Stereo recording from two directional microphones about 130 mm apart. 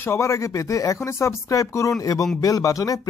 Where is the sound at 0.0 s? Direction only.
20° left (ahead or behind).